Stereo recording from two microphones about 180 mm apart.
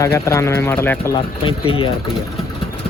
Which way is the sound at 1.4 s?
30° left (ahead or behind).